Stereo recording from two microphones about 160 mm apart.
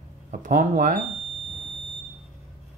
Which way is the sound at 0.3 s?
55° right (ahead or behind).